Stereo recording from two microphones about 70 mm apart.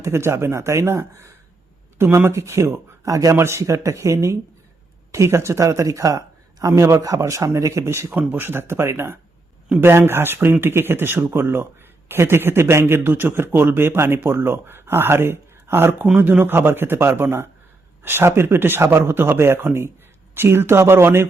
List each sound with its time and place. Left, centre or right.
0.0 s speech: right
3.3 s speech: right